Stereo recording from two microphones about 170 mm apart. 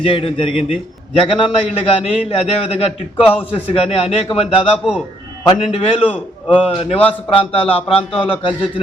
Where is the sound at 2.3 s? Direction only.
35° left (ahead or behind).